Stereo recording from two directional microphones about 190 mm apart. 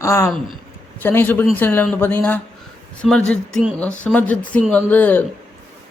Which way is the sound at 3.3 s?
5° left (ahead or behind).